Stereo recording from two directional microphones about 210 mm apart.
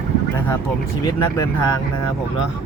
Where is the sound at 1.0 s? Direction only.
20° left (ahead or behind).